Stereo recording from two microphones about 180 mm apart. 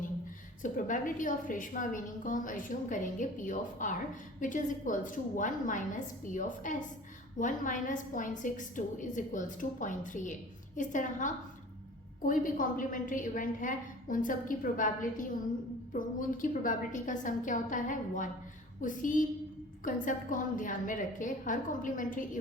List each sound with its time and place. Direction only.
0.6 s a woman's voice: 45° left (ahead or behind)